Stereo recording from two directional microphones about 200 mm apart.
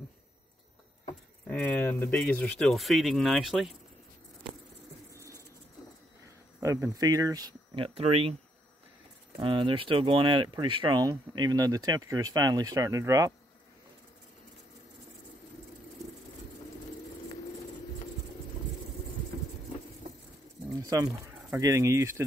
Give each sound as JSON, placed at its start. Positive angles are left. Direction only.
{"t": 1.5, "sound": "speech", "side_deg": 10}
{"t": 6.6, "sound": "speech", "side_deg": -15}
{"t": 9.4, "sound": "speech", "side_deg": -25}
{"t": 21.5, "sound": "speech", "side_deg": -15}